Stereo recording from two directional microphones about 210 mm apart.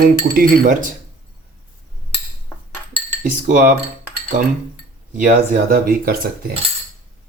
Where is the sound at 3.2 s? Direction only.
40° right (ahead or behind).